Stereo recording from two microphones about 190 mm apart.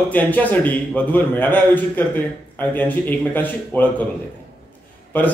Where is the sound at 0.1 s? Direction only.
10° left (ahead or behind).